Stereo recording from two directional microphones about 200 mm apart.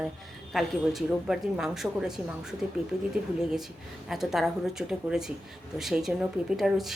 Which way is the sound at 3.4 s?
Centre (ahead or behind).